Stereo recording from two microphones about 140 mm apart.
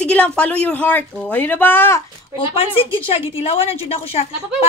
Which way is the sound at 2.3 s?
40° left (ahead or behind).